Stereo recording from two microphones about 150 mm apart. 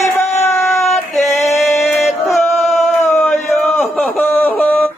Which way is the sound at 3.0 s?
15° left (ahead or behind).